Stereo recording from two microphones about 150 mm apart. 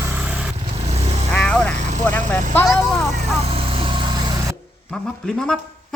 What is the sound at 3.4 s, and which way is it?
Vehicle, 40° right (ahead or behind).